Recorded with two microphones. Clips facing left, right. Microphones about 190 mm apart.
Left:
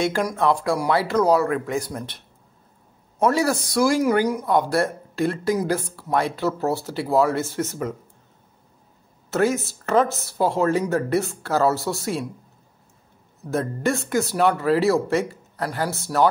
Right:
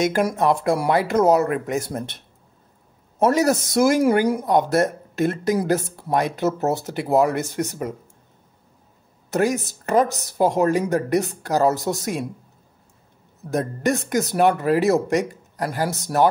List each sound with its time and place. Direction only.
0.0 s speech: 20° right (ahead or behind)
3.3 s speech: 20° right (ahead or behind)
9.3 s speech: 15° right (ahead or behind)
13.5 s speech: 15° right (ahead or behind)